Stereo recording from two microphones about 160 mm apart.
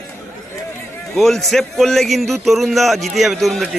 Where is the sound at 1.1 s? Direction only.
Centre (ahead or behind).